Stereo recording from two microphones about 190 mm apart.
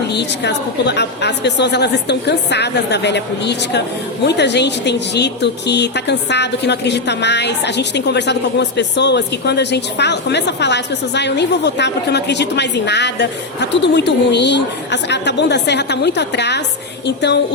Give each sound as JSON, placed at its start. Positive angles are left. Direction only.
{"t": 0.1, "sound": "speech", "side_deg": 65}